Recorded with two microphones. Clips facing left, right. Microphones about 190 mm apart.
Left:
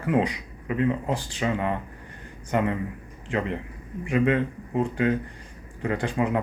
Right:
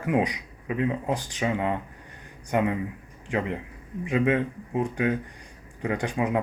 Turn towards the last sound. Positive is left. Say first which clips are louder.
# left 1 dB
turn(degrees=-15)  # may be behind; listen again after turning